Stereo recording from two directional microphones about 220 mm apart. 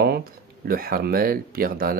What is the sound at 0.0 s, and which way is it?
Speech, 45° right (ahead or behind).